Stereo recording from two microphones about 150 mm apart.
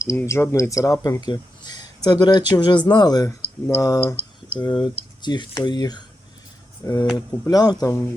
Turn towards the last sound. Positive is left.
turn(degrees=25)  # may be behind; listen again after turning